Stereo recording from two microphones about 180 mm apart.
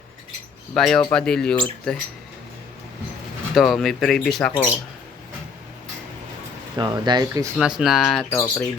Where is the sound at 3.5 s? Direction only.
Centre (ahead or behind).